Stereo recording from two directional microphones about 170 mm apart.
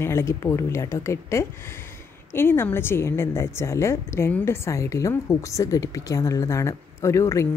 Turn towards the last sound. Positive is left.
turn(degrees=15)  # may be behind; listen again after turning